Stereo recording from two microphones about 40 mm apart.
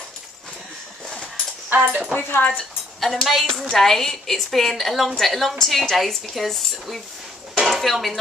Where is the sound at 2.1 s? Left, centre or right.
Left.